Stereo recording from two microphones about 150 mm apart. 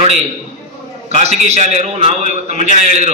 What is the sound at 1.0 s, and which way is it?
A man's voice, 45° right (ahead or behind).